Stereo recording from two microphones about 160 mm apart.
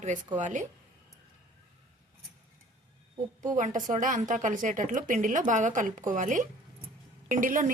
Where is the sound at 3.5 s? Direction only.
50° right (ahead or behind).